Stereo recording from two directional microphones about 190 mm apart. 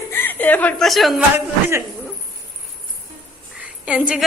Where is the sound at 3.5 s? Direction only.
5° right (ahead or behind).